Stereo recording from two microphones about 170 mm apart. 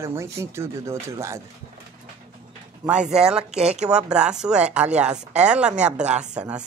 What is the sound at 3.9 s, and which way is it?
Speech, 5° right (ahead or behind).